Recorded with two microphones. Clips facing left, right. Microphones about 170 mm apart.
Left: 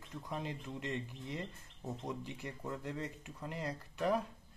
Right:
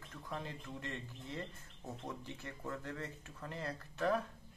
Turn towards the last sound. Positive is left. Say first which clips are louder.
# left 1 dB
turn(degrees=15)  # may be behind; listen again after turning